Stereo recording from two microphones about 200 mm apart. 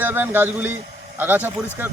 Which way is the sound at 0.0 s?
10° right (ahead or behind).